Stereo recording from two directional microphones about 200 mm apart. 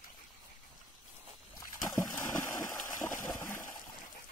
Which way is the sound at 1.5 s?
15° left (ahead or behind).